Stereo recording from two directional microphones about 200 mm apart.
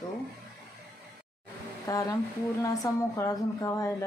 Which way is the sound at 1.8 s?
15° left (ahead or behind).